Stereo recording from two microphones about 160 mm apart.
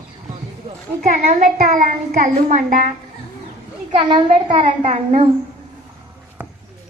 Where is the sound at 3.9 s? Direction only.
30° right (ahead or behind).